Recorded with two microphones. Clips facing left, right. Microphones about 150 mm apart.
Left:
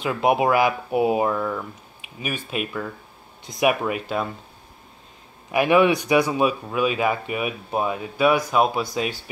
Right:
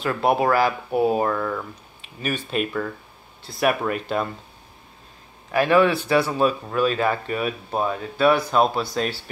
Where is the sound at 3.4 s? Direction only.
15° left (ahead or behind).